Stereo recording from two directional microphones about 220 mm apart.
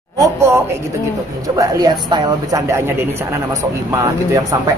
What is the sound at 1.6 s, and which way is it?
Speech, 20° right (ahead or behind).